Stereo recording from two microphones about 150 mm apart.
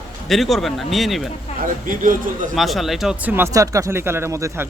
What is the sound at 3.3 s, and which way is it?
Speech, 20° right (ahead or behind).